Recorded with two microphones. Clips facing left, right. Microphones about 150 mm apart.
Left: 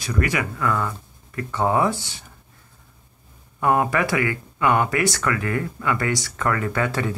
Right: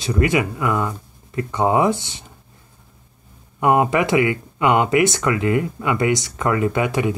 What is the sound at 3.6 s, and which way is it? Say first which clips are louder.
Speech: right 3 dB; 20° right (ahead or behind).